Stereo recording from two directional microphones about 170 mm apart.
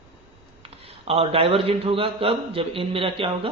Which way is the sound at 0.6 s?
35° right (ahead or behind).